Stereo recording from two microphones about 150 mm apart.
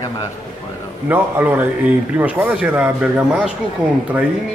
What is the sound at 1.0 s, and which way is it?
A man's voice, 15° right (ahead or behind).